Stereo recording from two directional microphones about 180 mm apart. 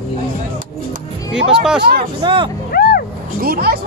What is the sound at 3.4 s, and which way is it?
Speech, 60° right (ahead or behind).